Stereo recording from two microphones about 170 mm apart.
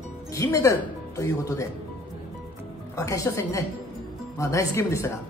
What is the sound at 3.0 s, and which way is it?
Speech, 20° left (ahead or behind).